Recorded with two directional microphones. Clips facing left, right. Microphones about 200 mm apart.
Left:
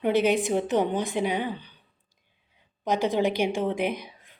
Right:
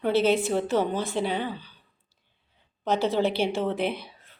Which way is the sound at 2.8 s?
15° left (ahead or behind).